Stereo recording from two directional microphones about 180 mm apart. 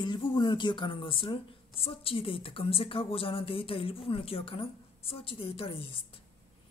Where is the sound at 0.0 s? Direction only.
25° left (ahead or behind).